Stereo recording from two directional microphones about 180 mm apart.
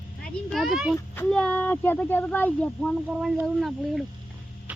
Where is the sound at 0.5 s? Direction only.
Centre (ahead or behind).